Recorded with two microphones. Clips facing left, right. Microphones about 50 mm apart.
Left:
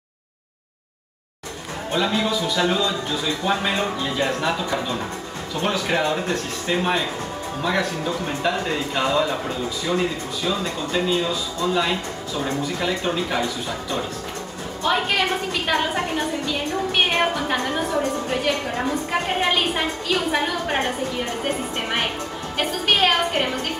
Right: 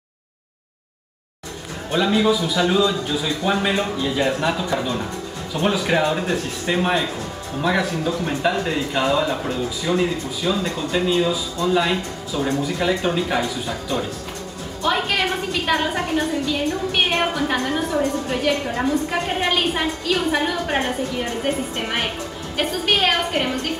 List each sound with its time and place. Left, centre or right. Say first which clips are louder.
1.9 s a woman's voice: right 4 dB; centre
4.2 s a woman's voice: right 2 dB; centre
8.3 s a woman's voice: right 1 dB; centre
10.6 s speech: right 2 dB; centre
11.1 s a woman's voice: right 3 dB; centre
14.8 s a woman's voice: even; centre